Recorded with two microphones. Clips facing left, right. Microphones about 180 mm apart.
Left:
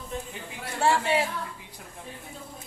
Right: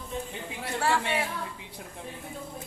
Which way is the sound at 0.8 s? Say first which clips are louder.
Left 4 dB; 25° left (ahead or behind).